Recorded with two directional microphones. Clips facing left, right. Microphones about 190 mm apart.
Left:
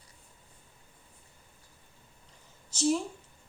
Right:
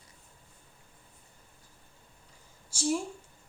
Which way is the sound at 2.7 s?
10° right (ahead or behind).